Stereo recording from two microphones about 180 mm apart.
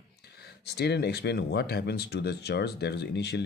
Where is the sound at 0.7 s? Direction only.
65° left (ahead or behind).